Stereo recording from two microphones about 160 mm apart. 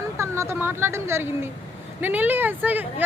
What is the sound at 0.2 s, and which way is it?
Speech, 15° right (ahead or behind).